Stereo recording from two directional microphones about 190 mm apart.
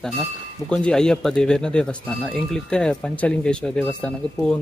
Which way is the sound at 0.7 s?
5° left (ahead or behind).